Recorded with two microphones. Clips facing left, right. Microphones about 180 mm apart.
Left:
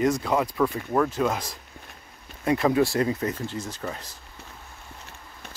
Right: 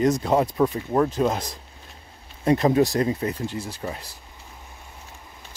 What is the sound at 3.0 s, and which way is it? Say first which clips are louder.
Speech: right 1 dB; 30° right (ahead or behind).